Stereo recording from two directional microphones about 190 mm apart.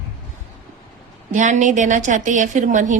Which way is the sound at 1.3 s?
40° right (ahead or behind).